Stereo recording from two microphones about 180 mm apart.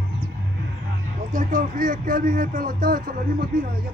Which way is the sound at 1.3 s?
45° right (ahead or behind).